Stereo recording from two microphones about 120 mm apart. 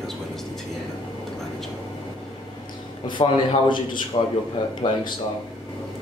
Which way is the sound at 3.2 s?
40° left (ahead or behind).